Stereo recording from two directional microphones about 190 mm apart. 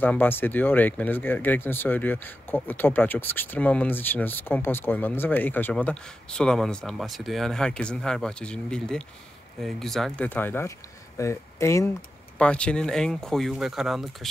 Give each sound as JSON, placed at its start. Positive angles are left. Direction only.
{"t": 0.0, "sound": "speech", "side_deg": 10}